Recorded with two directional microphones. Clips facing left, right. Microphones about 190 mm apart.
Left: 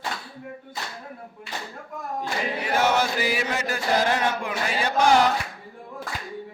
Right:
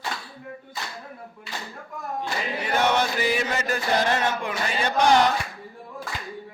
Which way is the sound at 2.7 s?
5° left (ahead or behind).